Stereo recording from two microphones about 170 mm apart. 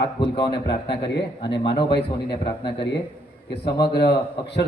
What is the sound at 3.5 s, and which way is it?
A man's voice, 75° left (ahead or behind).